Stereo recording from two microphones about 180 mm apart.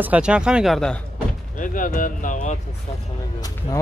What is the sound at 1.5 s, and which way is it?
Speech, 50° left (ahead or behind).